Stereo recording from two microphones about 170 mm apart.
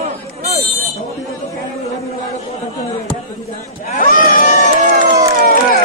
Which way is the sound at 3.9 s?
50° left (ahead or behind).